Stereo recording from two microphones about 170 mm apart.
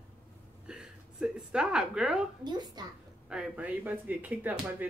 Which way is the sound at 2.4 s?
25° right (ahead or behind).